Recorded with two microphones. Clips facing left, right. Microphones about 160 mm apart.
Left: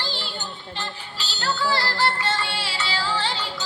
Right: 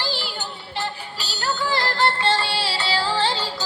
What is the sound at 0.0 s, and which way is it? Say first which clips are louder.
Music: right 3 dB; 10° right (ahead or behind).